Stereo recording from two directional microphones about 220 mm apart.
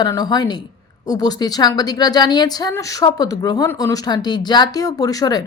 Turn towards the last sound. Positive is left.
turn(degrees=15)  # may be behind; listen again after turning